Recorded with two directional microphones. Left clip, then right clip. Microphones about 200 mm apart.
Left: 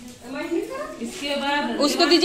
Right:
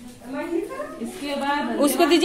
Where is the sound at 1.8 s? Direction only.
20° right (ahead or behind).